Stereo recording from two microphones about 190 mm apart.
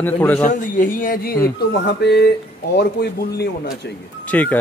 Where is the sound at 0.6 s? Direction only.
45° left (ahead or behind).